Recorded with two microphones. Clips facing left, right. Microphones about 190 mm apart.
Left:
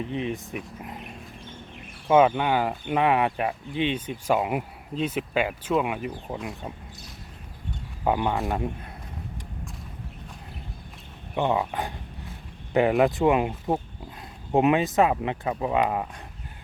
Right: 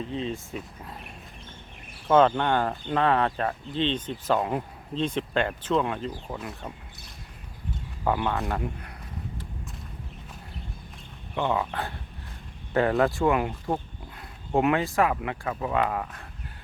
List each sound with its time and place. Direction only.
0.0 s speech: 15° left (ahead or behind)
2.0 s speech: 10° left (ahead or behind)
8.0 s speech: 15° left (ahead or behind)
11.3 s speech: 20° left (ahead or behind)